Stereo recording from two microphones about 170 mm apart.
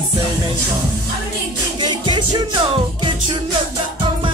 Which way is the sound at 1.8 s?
25° right (ahead or behind).